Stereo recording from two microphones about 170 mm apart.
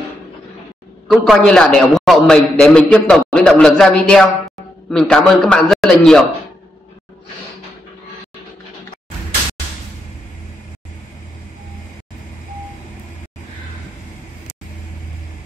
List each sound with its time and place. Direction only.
1.0 s a man's voice: centre (ahead or behind)